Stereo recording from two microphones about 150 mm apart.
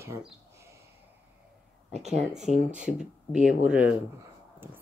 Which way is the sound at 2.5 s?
55° left (ahead or behind).